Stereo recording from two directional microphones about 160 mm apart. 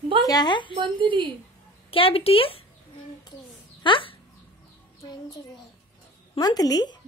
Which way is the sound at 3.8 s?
35° left (ahead or behind).